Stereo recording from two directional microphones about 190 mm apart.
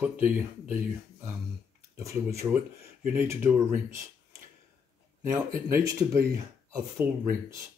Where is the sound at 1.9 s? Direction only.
15° right (ahead or behind).